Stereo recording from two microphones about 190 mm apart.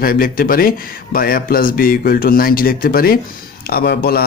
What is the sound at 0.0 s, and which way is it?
Speech, 50° left (ahead or behind).